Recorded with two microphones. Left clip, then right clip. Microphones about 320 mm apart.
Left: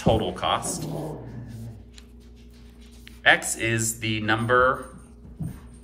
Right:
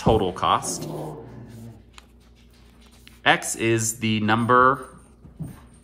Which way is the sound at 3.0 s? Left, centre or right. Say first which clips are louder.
Left 1 dB; centre.